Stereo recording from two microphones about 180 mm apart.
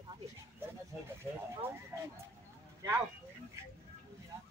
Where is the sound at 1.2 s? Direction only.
15° right (ahead or behind).